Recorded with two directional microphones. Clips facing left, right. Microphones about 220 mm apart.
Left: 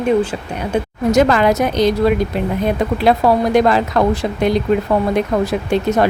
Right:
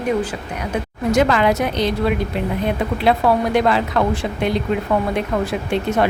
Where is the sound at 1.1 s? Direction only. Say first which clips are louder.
Left 3 dB; 45° left (ahead or behind).